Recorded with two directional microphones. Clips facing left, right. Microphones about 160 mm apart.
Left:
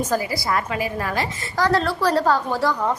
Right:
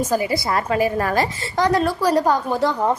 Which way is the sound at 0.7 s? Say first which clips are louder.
Right 6 dB; 45° right (ahead or behind).